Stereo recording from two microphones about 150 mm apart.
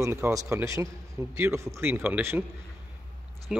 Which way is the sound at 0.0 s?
20° right (ahead or behind).